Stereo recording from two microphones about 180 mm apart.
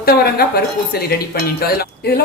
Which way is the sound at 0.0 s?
55° left (ahead or behind).